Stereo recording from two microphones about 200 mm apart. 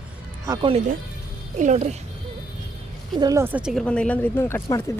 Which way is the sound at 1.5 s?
35° right (ahead or behind).